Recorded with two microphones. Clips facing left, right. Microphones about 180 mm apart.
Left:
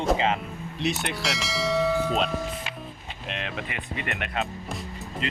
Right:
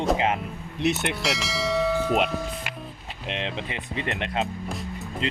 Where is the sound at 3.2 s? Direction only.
25° right (ahead or behind).